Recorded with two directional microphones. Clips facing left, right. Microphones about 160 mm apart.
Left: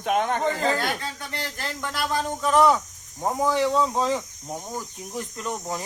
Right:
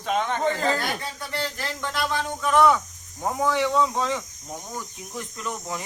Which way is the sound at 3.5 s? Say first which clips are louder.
Even; 35° left (ahead or behind).